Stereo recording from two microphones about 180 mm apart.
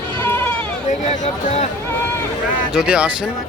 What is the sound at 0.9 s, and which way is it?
Speech, 40° left (ahead or behind).